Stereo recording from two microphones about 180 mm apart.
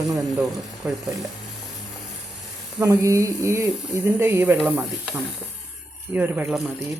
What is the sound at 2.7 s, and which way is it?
Speech, 15° right (ahead or behind).